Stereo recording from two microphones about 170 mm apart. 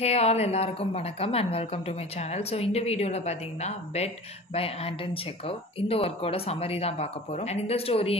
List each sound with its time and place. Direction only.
0.0 s a woman's voice: 40° left (ahead or behind)